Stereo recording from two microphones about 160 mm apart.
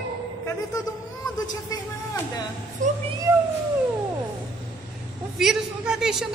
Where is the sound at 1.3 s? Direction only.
25° left (ahead or behind).